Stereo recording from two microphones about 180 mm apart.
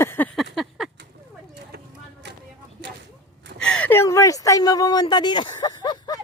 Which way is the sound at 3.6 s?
5° left (ahead or behind).